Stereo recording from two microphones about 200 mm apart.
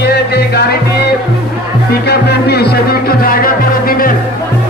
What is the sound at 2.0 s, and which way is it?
Music, 55° left (ahead or behind).